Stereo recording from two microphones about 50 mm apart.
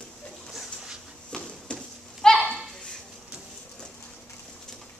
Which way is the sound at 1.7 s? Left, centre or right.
Centre.